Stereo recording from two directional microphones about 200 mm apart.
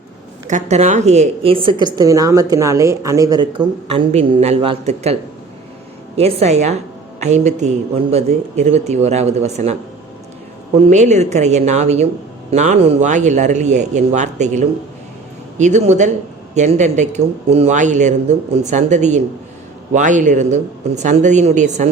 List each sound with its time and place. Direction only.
0.4 s a woman's voice: 35° right (ahead or behind)
6.1 s speech: 30° right (ahead or behind)
10.8 s speech: 35° right (ahead or behind)